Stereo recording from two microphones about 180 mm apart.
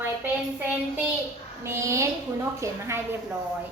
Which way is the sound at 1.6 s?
15° right (ahead or behind).